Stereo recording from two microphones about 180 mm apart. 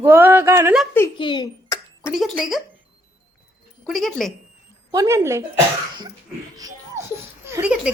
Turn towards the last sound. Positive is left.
turn(degrees=-5)  # may be behind; listen again after turning